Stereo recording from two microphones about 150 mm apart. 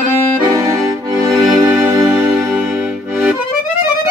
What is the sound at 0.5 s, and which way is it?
Accordion, 25° right (ahead or behind).